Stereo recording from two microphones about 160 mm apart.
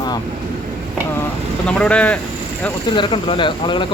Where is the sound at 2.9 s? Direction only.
30° left (ahead or behind).